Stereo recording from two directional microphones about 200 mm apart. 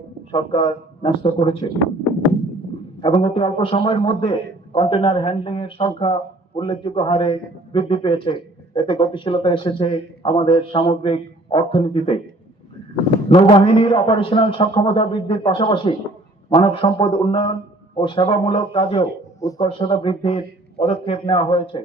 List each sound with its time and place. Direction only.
0.3 s a man's voice: 25° left (ahead or behind)
3.0 s a man's voice: 25° left (ahead or behind)
13.3 s a man's voice: 25° left (ahead or behind)
19.4 s a man's voice: 15° left (ahead or behind)